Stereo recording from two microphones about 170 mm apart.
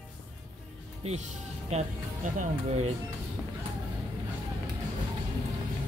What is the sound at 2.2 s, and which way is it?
Speech, 45° right (ahead or behind).